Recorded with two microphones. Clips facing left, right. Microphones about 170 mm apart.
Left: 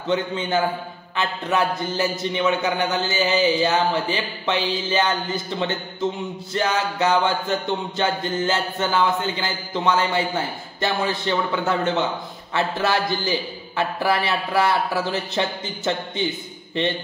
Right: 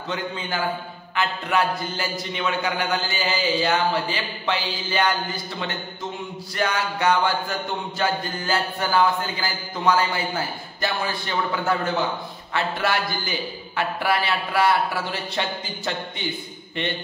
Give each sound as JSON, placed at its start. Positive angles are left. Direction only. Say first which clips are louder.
{"t": 1.1, "sound": "a man's voice", "louder": "even", "side_deg": 25}